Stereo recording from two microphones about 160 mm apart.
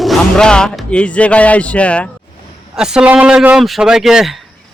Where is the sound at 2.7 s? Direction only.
5° right (ahead or behind).